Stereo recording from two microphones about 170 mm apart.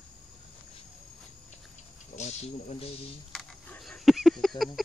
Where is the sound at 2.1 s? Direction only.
40° left (ahead or behind).